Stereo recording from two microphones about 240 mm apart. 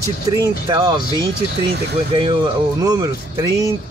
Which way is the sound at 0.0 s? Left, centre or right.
Centre.